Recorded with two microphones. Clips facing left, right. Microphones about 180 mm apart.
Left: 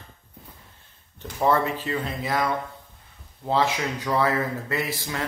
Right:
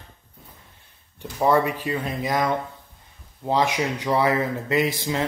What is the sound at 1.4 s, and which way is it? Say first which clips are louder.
Speech: right 2 dB; 15° right (ahead or behind).